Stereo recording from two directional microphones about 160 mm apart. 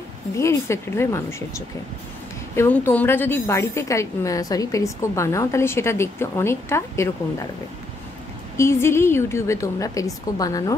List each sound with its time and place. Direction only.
0.4 s a woman's voice: 15° left (ahead or behind)
8.5 s a woman's voice: 15° left (ahead or behind)